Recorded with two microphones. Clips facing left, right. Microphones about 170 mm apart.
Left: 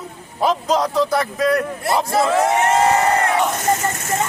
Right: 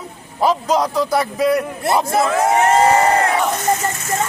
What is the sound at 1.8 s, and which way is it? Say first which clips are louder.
Speech: right 3 dB; 25° right (ahead or behind).